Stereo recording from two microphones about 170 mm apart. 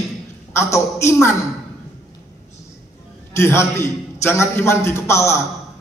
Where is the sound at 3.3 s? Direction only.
15° left (ahead or behind).